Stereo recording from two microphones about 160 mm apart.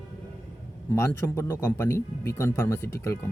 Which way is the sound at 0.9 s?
20° left (ahead or behind).